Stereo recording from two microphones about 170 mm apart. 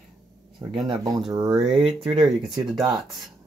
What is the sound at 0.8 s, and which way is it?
Speech, 25° right (ahead or behind).